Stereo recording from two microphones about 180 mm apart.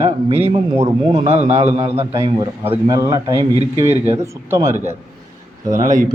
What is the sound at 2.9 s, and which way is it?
A man's voice, 20° right (ahead or behind).